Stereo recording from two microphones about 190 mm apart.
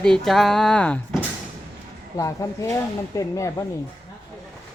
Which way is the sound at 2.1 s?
15° left (ahead or behind).